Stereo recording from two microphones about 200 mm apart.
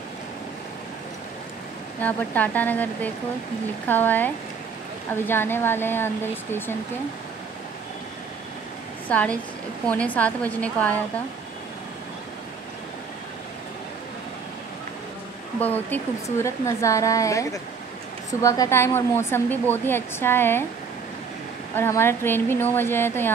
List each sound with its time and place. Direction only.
2.0 s speech: 10° left (ahead or behind)
9.1 s speech: 5° left (ahead or behind)
15.6 s speech: 10° left (ahead or behind)
21.7 s speech: 10° left (ahead or behind)